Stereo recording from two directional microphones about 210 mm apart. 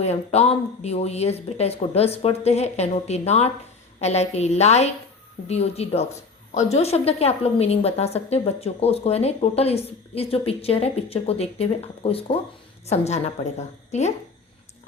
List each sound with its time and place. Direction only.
0.0 s a woman's voice: 30° left (ahead or behind)